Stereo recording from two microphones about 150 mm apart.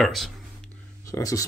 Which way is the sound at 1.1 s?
20° left (ahead or behind).